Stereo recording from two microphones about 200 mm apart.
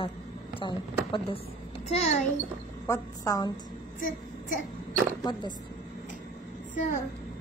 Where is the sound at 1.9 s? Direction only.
35° left (ahead or behind).